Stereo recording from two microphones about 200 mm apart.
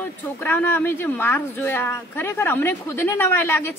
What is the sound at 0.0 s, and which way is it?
A woman's voice, 10° left (ahead or behind).